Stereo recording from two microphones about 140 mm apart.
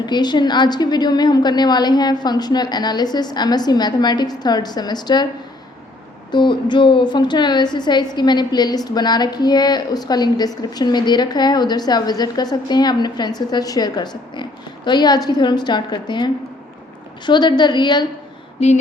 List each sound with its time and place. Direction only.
0.0 s a woman's voice: 30° left (ahead or behind)
6.3 s a woman's voice: 35° left (ahead or behind)
18.6 s a sound: 45° left (ahead or behind)